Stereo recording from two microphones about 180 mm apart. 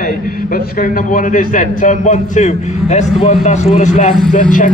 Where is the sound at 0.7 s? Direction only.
50° left (ahead or behind).